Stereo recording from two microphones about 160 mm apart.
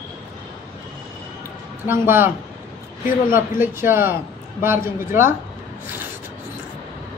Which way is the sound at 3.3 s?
15° right (ahead or behind).